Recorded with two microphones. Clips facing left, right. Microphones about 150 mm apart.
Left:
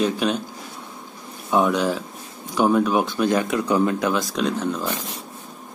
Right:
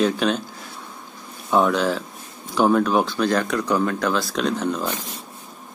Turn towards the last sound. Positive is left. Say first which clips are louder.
# even
turn(degrees=5)  # may be behind; listen again after turning